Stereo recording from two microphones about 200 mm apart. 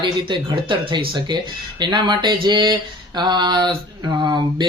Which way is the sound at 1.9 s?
20° right (ahead or behind).